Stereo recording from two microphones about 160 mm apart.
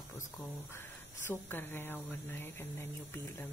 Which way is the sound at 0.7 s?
15° left (ahead or behind).